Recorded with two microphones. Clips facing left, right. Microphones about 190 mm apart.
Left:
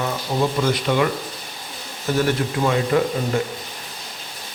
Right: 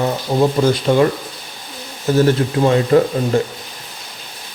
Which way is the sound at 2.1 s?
35° right (ahead or behind).